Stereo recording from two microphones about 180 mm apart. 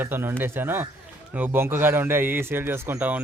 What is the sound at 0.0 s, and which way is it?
A man's voice, 10° right (ahead or behind).